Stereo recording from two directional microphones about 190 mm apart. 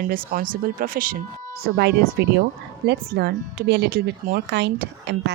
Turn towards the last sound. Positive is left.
turn(degrees=-60)  # may be behind; listen again after turning